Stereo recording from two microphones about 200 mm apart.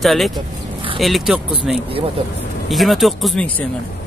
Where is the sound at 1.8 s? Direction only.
25° right (ahead or behind).